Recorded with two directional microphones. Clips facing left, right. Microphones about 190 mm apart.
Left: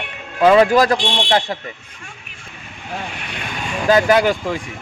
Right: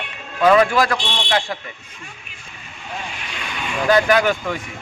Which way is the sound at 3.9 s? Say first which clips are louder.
Left 2 dB; 30° left (ahead or behind).